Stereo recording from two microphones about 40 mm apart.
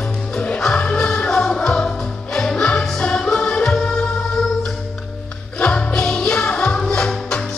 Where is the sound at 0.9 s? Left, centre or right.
Left.